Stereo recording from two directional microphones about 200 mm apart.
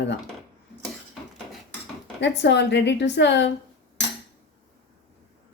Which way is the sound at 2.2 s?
60° left (ahead or behind).